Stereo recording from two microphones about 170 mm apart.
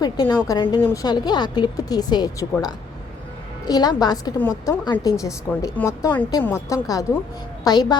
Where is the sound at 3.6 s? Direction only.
25° left (ahead or behind).